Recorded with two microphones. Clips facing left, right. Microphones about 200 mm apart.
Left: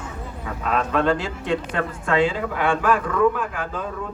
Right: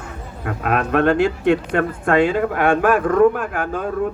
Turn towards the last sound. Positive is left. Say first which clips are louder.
# right 5 dB
turn(degrees=-55)  # may be behind; listen again after turning